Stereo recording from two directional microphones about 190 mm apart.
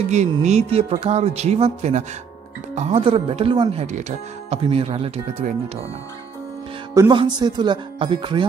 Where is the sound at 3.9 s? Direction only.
35° right (ahead or behind).